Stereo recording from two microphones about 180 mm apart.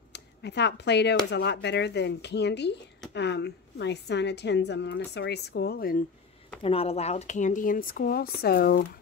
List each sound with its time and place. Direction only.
0.1 s a woman's voice: 70° left (ahead or behind); by 6.0 s 55° left (ahead or behind)
6.6 s speech: 30° left (ahead or behind); by 8.8 s 60° left (ahead or behind)